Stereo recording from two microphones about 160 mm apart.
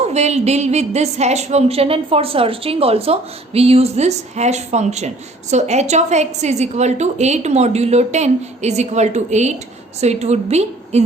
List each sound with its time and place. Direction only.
0.0 s a woman's voice: 45° right (ahead or behind)